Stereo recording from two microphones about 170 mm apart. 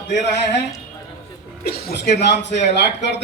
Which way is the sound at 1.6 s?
70° left (ahead or behind).